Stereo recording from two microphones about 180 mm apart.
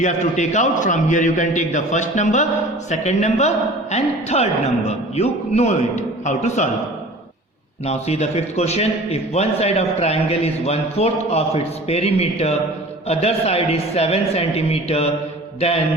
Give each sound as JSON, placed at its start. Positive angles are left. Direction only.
{"t": 0.0, "sound": "a man's voice", "side_deg": 40}
{"t": 7.9, "sound": "a man's voice", "side_deg": 35}